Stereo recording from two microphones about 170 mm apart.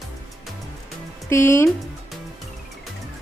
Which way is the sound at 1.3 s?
15° left (ahead or behind).